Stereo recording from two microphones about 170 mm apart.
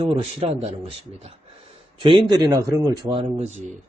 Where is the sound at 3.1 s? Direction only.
35° right (ahead or behind).